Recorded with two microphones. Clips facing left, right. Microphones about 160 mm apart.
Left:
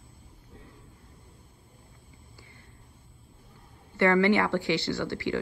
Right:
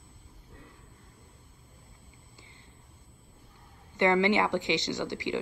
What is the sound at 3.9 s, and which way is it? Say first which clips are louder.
Speech: left 2 dB; 20° right (ahead or behind).